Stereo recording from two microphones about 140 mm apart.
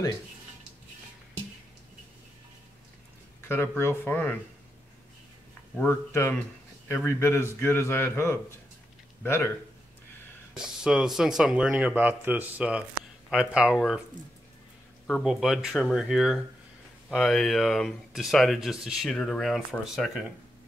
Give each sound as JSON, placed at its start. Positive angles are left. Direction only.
{"t": 3.4, "sound": "speech", "side_deg": 15}
{"t": 5.9, "sound": "speech", "side_deg": 20}
{"t": 10.5, "sound": "speech", "side_deg": -5}
{"t": 15.0, "sound": "speech", "side_deg": 0}